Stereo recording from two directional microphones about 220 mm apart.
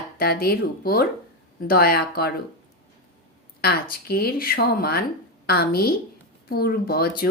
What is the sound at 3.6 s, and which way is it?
Speech, 45° left (ahead or behind).